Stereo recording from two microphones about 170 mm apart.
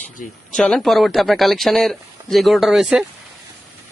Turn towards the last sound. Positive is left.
turn(degrees=0)  # may be behind; listen again after turning